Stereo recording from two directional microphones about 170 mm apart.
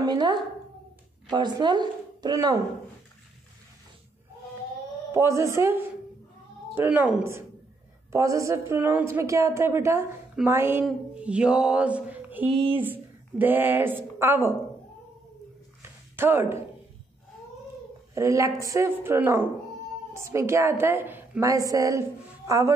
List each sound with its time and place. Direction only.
0.0 s speech: 25° right (ahead or behind)
5.1 s a woman's voice: 15° right (ahead or behind)
12.4 s speech: 30° right (ahead or behind)
12.8 s speech: 10° right (ahead or behind)
15.8 s a sound: 15° right (ahead or behind)
18.1 s a woman's voice: 20° right (ahead or behind)